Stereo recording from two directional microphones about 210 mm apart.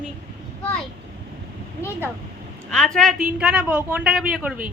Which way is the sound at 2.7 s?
5° left (ahead or behind).